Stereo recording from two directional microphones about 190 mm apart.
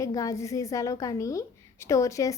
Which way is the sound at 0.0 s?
15° left (ahead or behind).